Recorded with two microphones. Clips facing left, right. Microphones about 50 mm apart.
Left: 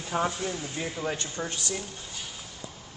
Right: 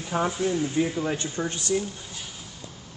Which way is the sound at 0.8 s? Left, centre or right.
Centre.